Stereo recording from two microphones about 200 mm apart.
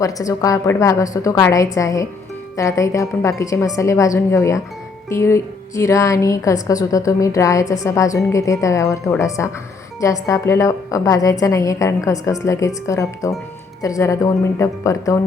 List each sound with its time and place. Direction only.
0.0 s a woman's voice: 15° left (ahead or behind)